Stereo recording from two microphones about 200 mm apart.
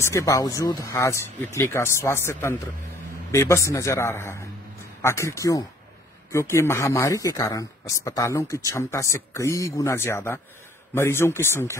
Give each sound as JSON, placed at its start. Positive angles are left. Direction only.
{"t": 0.0, "sound": "speech", "side_deg": 15}